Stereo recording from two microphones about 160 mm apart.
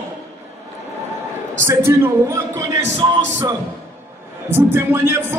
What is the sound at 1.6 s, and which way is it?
Speech, 15° right (ahead or behind).